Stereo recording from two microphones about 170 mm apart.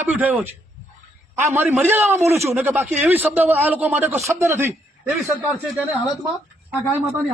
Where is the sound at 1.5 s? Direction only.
10° right (ahead or behind).